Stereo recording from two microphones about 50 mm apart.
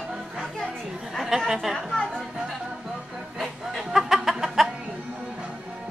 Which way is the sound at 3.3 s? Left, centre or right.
Centre.